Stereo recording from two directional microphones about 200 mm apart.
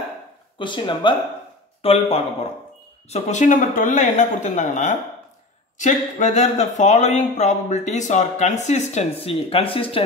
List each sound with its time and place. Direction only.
0.6 s speech: 25° left (ahead or behind)